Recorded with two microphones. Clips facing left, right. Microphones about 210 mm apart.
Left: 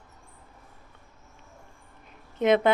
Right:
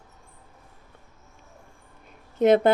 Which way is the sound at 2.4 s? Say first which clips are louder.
Right 4 dB; 40° right (ahead or behind).